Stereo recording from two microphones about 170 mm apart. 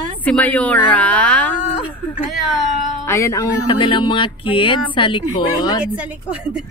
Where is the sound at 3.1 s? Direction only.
15° left (ahead or behind).